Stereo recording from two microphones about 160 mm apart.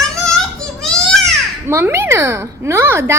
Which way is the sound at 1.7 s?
15° right (ahead or behind).